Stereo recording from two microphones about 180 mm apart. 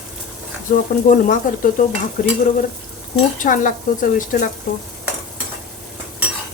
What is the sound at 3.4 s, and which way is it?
Stir, 45° left (ahead or behind).